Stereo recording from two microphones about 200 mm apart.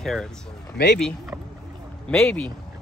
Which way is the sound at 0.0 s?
Centre (ahead or behind).